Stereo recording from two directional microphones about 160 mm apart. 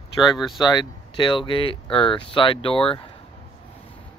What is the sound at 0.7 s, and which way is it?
Speech, 30° left (ahead or behind).